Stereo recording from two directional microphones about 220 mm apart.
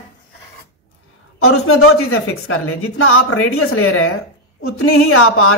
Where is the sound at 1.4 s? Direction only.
75° left (ahead or behind).